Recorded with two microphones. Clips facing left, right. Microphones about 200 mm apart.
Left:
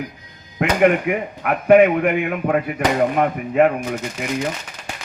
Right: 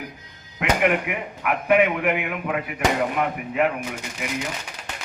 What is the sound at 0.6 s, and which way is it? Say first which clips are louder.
Speech: left 5 dB; 40° left (ahead or behind).